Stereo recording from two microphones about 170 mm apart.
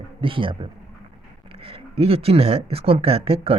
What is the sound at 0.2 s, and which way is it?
Speech, 30° right (ahead or behind).